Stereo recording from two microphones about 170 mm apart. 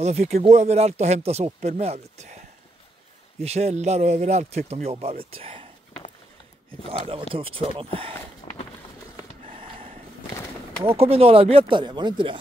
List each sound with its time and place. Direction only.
0.0 s speech: 40° right (ahead or behind)
6.9 s speech: 35° right (ahead or behind)
8.4 s run: 40° left (ahead or behind)
10.8 s speech: 35° right (ahead or behind)